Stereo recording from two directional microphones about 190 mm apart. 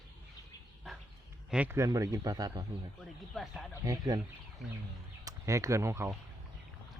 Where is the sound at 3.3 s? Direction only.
Centre (ahead or behind).